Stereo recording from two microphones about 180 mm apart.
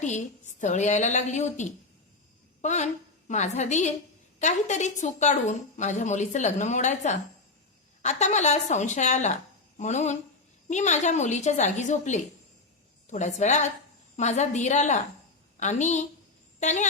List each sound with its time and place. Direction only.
0.0 s a woman's voice: 40° left (ahead or behind)